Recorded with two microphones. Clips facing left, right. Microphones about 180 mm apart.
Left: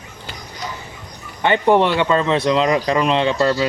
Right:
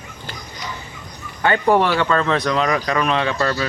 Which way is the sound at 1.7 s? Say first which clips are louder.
Left 2 dB; 20° left (ahead or behind).